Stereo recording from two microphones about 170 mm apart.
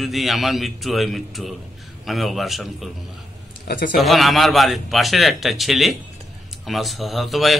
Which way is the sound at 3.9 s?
Centre (ahead or behind).